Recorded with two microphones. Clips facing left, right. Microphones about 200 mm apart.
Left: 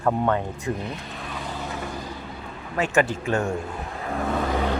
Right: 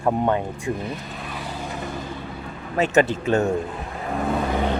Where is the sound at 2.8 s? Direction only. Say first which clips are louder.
Right 3 dB; 20° right (ahead or behind).